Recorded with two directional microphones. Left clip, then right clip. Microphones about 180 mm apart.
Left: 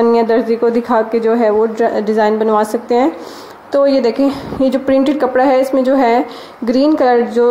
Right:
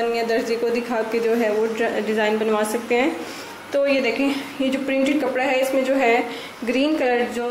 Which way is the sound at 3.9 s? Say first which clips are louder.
Left 7 dB; 50° left (ahead or behind).